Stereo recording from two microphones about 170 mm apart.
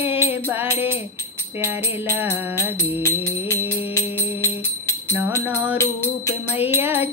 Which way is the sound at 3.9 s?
15° left (ahead or behind).